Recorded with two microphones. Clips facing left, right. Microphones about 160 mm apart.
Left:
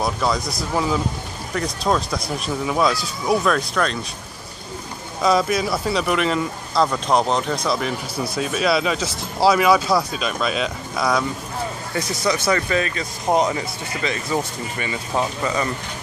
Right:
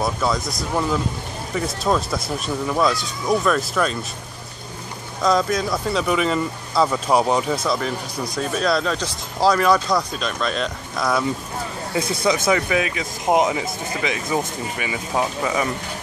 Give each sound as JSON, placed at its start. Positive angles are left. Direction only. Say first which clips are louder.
{"t": 0.0, "sound": "speech", "louder": "even", "side_deg": 0}
{"t": 5.2, "sound": "speech", "louder": "left 1 dB", "side_deg": 5}
{"t": 12.0, "sound": "speech", "louder": "right 3 dB", "side_deg": -55}
{"t": 12.4, "sound": "speech", "louder": "right 1 dB", "side_deg": -10}